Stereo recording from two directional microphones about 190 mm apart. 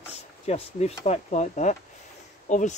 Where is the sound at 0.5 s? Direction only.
35° left (ahead or behind).